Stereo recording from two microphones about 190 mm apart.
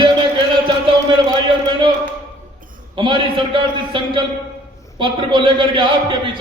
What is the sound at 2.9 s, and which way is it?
A man's voice, 25° right (ahead or behind).